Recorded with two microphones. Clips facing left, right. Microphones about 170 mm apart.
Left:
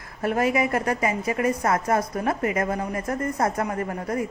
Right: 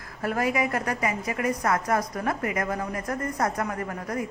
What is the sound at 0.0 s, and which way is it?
A woman's voice, 25° left (ahead or behind).